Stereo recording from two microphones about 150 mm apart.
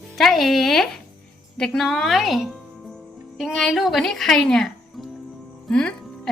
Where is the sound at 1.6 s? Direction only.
5° left (ahead or behind).